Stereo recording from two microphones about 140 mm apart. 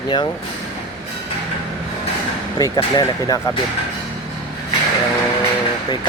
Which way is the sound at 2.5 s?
30° left (ahead or behind).